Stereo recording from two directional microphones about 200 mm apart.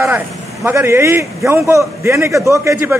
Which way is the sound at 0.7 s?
15° right (ahead or behind).